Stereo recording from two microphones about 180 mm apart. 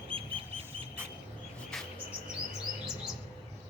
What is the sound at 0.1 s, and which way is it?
Duck, 30° right (ahead or behind).